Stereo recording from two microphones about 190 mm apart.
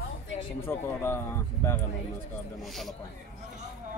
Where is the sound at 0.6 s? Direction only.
15° left (ahead or behind).